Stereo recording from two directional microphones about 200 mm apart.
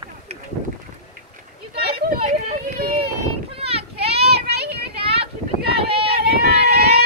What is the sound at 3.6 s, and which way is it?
Boat, 30° right (ahead or behind).